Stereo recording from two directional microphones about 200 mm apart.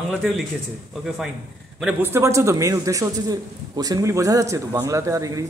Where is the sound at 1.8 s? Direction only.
10° right (ahead or behind).